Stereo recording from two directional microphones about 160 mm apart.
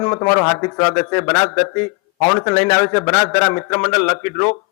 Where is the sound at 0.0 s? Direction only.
20° left (ahead or behind).